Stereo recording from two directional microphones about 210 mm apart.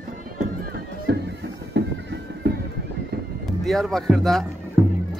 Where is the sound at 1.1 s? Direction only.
50° right (ahead or behind).